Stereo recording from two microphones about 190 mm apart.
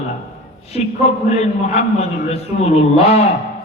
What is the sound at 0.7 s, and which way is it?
A man's voice, 35° left (ahead or behind).